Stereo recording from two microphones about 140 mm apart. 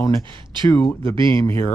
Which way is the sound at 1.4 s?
15° left (ahead or behind).